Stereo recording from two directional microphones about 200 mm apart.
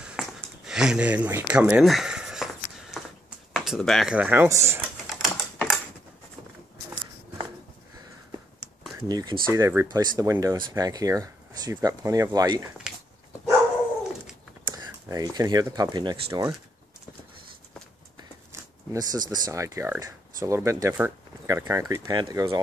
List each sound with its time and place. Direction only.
0.0 s a sound: 5° right (ahead or behind)
3.5 s speech: centre (ahead or behind)
5.1 s typing: centre (ahead or behind)
9.0 s speech: 20° right (ahead or behind)
14.7 s speech: 20° right (ahead or behind)
18.5 s speech: 15° right (ahead or behind)